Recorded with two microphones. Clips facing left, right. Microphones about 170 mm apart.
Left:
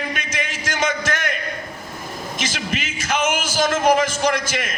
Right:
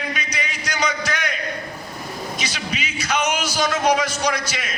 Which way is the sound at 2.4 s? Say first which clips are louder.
Left 2 dB; 50° left (ahead or behind).